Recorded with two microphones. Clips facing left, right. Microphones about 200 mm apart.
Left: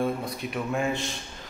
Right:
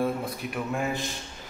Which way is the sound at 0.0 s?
5° right (ahead or behind).